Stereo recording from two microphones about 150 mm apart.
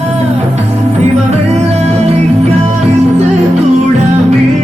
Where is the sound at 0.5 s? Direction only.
50° right (ahead or behind).